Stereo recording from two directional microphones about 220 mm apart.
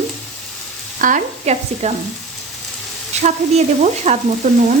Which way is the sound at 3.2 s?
30° right (ahead or behind).